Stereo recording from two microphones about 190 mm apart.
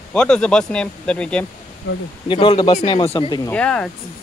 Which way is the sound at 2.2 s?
25° left (ahead or behind).